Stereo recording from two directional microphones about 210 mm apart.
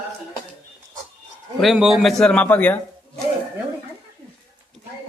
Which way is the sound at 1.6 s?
Centre (ahead or behind).